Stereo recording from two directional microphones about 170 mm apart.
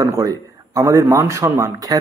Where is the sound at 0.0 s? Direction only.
20° right (ahead or behind).